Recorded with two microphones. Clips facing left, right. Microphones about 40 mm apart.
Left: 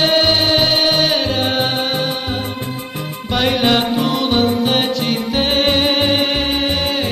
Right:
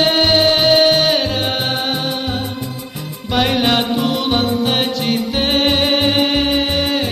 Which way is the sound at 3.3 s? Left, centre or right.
Centre.